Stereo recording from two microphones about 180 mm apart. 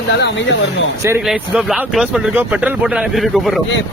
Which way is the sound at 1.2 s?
5° right (ahead or behind).